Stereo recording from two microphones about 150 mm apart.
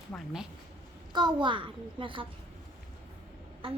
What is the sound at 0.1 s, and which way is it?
Speech, 5° left (ahead or behind).